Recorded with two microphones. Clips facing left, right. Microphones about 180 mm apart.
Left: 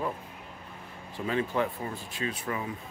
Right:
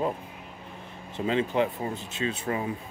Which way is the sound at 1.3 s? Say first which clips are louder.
Right 3 dB; 20° right (ahead or behind).